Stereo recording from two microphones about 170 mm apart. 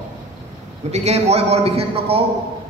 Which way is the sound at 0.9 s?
40° right (ahead or behind).